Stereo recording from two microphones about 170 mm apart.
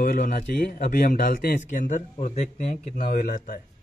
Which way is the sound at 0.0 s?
55° left (ahead or behind).